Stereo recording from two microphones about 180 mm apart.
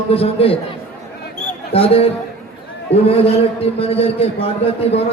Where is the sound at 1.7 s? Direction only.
35° left (ahead or behind).